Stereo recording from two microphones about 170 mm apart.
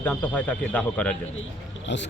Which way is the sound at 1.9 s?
90° left.